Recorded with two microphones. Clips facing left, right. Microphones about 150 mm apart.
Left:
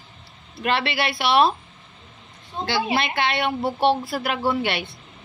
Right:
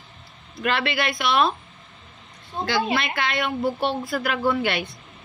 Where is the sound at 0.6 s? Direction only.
30° left (ahead or behind).